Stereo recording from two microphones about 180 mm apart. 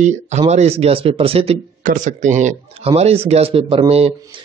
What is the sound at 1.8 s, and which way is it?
Speech, 45° right (ahead or behind).